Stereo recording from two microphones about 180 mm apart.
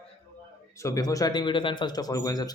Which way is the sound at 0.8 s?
20° left (ahead or behind).